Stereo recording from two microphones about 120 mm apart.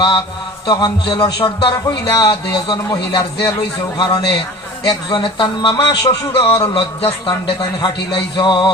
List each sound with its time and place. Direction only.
0.7 s a man's voice: 35° left (ahead or behind)